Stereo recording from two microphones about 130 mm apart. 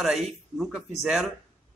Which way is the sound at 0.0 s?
Centre (ahead or behind).